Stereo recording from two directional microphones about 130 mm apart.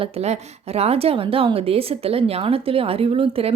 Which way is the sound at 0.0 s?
55° right (ahead or behind).